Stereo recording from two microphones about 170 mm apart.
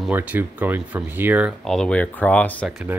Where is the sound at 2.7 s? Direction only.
5° right (ahead or behind).